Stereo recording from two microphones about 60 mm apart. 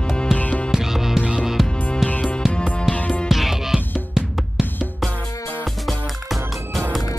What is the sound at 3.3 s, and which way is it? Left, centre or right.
Music, centre.